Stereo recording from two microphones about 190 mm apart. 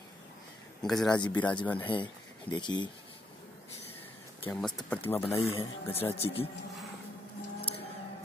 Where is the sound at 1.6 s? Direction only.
10° left (ahead or behind).